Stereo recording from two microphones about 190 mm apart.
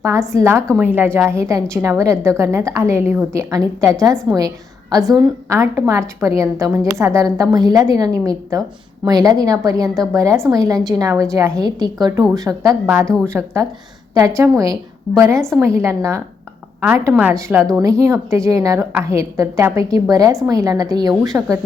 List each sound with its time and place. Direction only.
0.0 s a woman's voice: 15° right (ahead or behind)
4.1 s a woman's voice: 5° left (ahead or behind)
4.4 s a woman's voice: 20° right (ahead or behind)
12.5 s a woman's voice: 10° right (ahead or behind)
13.1 s a woman's voice: 5° left (ahead or behind)
13.3 s a woman's voice: 15° right (ahead or behind)
15.4 s a woman's voice: centre (ahead or behind)
15.6 s a woman's voice: 15° right (ahead or behind)